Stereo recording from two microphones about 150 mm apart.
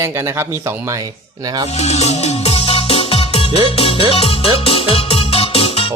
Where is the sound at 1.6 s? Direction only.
45° left (ahead or behind).